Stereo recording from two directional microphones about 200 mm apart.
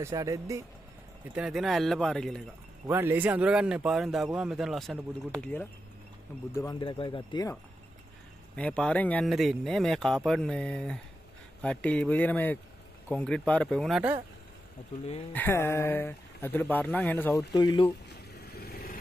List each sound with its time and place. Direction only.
0.0 s speech: 15° right (ahead or behind)
1.3 s speech: 5° right (ahead or behind)
2.9 s speech: 10° right (ahead or behind); by 7.5 s 20° left (ahead or behind)
8.5 s speech: 5° left (ahead or behind)
15.3 s speech: 10° left (ahead or behind)
18.3 s vehicle: 50° left (ahead or behind)